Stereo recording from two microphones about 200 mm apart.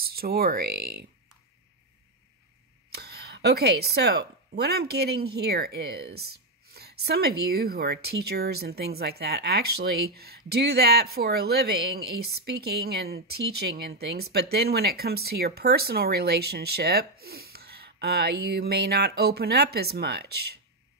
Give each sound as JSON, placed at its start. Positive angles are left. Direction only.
{"t": 0.0, "sound": "speech", "side_deg": -50}
{"t": 2.9, "sound": "speech", "side_deg": -55}